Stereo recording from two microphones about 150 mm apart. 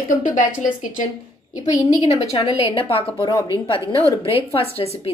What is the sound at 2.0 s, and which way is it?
A woman's voice, 40° left (ahead or behind).